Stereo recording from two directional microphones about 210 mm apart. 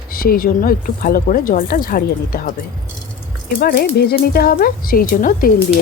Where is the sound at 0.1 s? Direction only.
45° left (ahead or behind).